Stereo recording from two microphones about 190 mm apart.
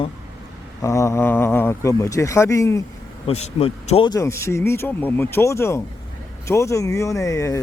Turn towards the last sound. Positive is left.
turn(degrees=15)  # may be behind; listen again after turning